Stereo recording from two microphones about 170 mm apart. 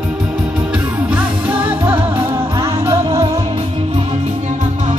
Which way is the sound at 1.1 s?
10° right (ahead or behind).